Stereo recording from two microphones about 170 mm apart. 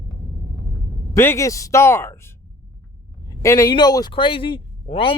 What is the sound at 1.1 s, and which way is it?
Speech, 15° left (ahead or behind).